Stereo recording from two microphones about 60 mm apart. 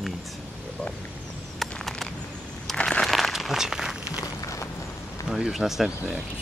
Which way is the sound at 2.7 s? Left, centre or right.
Centre.